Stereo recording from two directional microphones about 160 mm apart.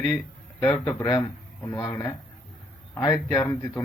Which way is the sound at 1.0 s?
20° left (ahead or behind).